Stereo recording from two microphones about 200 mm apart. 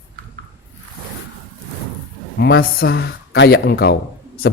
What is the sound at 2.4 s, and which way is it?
Speech, 50° left (ahead or behind).